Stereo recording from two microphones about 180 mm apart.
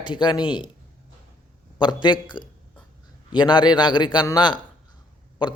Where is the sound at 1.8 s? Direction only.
25° left (ahead or behind).